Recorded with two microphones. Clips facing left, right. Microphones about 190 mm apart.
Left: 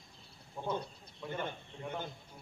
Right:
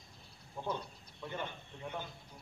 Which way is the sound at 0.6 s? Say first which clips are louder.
Left 1 dB; 5° left (ahead or behind).